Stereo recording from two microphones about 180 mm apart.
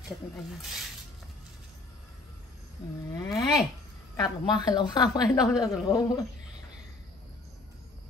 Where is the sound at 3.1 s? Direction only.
20° left (ahead or behind).